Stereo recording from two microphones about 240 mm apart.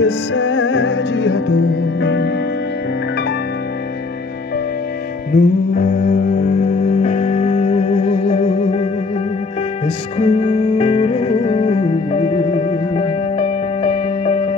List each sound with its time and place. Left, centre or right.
0.0 s music: left
5.3 s music: left
9.8 s music: left